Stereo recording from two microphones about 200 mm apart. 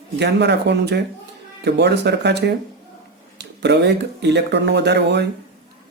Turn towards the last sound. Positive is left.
turn(degrees=-60)  # may be behind; listen again after turning